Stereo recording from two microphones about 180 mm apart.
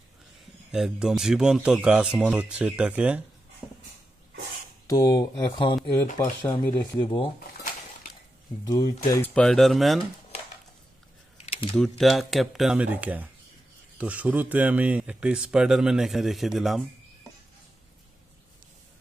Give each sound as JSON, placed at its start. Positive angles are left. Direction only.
{"t": 0.7, "sound": "a man's voice", "side_deg": 0}
{"t": 4.8, "sound": "speech", "side_deg": 20}
{"t": 8.6, "sound": "a man's voice", "side_deg": 20}
{"t": 11.3, "sound": "a sound", "side_deg": 35}
{"t": 12.0, "sound": "a man's voice", "side_deg": 0}